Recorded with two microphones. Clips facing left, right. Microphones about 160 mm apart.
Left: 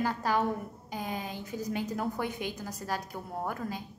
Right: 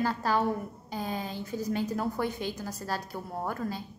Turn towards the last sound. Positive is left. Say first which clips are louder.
# right 2 dB
turn(degrees=15)  # may be behind; listen again after turning